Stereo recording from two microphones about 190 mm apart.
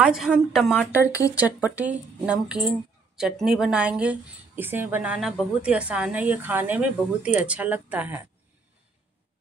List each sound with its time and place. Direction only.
0.0 s a woman's voice: 5° right (ahead or behind)